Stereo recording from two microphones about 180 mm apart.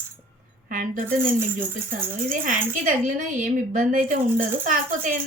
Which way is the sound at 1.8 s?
45° right (ahead or behind).